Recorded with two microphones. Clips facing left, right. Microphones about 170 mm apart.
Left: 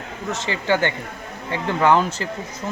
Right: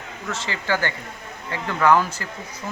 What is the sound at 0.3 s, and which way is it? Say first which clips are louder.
Speech: left 4 dB; 20° left (ahead or behind).